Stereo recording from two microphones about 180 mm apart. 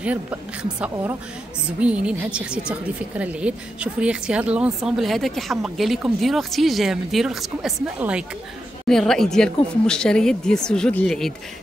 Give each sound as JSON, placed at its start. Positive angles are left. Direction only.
{"t": 0.0, "sound": "a woman's voice", "side_deg": -5}